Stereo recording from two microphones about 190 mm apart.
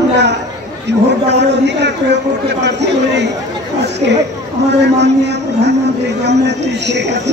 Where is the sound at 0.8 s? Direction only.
65° right (ahead or behind).